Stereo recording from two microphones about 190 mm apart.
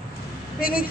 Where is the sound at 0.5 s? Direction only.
50° left (ahead or behind).